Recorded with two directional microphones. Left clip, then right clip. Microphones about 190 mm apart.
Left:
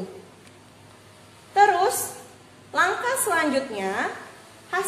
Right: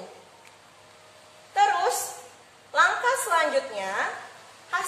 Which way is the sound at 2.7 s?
25° left (ahead or behind).